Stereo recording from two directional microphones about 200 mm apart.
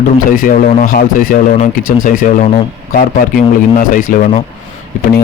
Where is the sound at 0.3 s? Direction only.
45° left (ahead or behind).